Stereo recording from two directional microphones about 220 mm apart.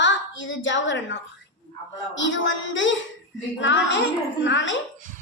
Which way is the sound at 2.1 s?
60° left (ahead or behind).